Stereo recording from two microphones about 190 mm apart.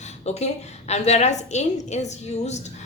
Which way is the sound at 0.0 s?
35° left (ahead or behind).